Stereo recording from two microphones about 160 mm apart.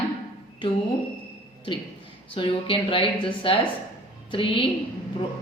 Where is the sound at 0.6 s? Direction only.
30° left (ahead or behind).